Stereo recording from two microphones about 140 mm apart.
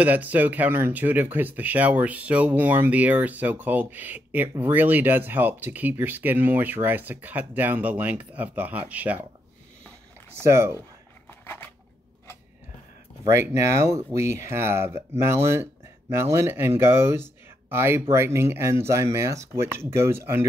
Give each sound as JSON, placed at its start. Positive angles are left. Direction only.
{"t": 0.0, "sound": "speech", "side_deg": -10}
{"t": 10.4, "sound": "speech", "side_deg": -20}
{"t": 11.2, "sound": "scissors", "side_deg": 15}
{"t": 13.2, "sound": "speech", "side_deg": -20}